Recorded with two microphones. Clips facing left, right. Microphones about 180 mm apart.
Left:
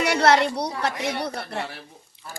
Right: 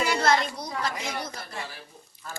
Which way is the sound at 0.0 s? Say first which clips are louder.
Left 5 dB; 70° left (ahead or behind).